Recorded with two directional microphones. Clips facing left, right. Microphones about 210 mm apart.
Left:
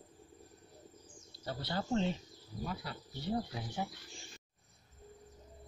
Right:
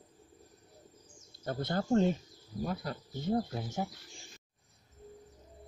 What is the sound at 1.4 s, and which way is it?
Speech, 50° right (ahead or behind).